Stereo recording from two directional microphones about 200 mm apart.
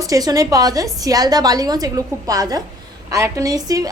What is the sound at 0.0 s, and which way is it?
A woman's voice, 15° right (ahead or behind).